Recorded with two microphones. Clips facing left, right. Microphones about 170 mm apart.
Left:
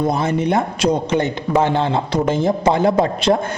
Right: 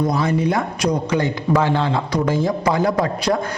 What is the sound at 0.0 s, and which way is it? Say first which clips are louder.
A man's voice: left 1 dB; 25° left (ahead or behind).